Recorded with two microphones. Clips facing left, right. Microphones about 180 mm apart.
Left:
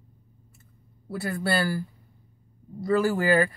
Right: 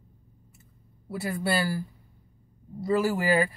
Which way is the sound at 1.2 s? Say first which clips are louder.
Left 1 dB; 20° right (ahead or behind).